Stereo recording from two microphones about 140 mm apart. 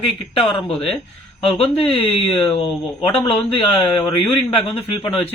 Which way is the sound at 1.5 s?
40° left (ahead or behind).